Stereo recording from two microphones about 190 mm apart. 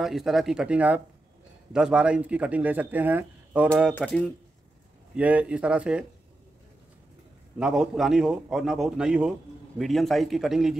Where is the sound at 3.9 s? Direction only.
5° left (ahead or behind).